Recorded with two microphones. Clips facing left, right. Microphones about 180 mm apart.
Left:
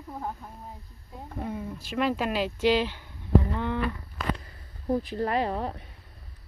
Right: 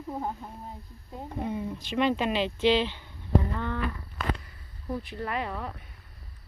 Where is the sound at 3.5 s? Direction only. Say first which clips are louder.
Left 3 dB; 15° left (ahead or behind).